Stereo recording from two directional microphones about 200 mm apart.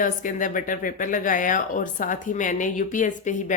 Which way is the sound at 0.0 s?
40° left (ahead or behind).